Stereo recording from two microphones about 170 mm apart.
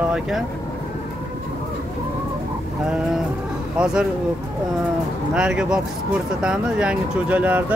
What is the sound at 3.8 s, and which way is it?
Speech, 5° right (ahead or behind).